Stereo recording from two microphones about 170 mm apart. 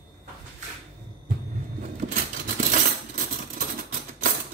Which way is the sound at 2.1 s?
55° right (ahead or behind).